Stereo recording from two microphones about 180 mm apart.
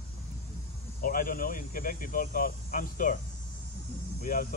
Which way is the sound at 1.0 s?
50° left (ahead or behind).